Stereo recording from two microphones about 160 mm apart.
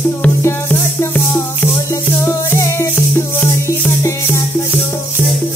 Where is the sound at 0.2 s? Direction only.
15° left (ahead or behind).